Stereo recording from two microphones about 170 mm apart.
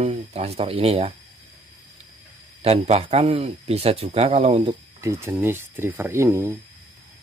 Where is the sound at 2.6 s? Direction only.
35° right (ahead or behind).